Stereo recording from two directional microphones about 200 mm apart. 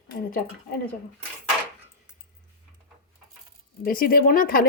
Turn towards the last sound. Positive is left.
turn(degrees=45)  # may be behind; listen again after turning